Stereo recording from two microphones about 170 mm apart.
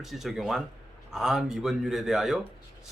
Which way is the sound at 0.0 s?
Centre (ahead or behind).